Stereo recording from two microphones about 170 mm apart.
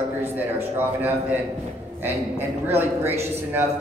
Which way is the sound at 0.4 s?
10° right (ahead or behind).